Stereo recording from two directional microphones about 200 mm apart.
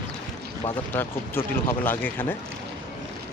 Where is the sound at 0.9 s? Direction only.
10° left (ahead or behind).